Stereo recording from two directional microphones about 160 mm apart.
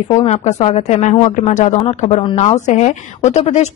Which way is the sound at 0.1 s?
45° left (ahead or behind).